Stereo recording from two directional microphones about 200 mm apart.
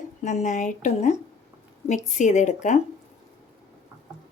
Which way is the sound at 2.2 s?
35° left (ahead or behind).